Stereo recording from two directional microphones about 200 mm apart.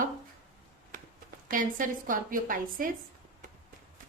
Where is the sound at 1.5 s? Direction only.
40° right (ahead or behind).